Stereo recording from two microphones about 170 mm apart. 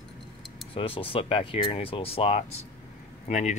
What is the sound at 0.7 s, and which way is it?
Speech, 30° left (ahead or behind).